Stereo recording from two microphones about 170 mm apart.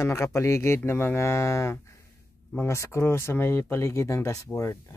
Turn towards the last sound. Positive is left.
turn(degrees=20)  # may be behind; listen again after turning